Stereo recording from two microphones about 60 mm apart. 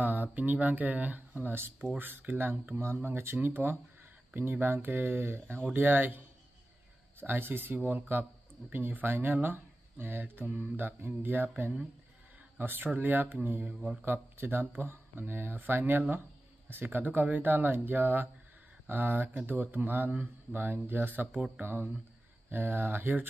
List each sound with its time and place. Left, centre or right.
0.0 s speech: right
3.0 s speech: right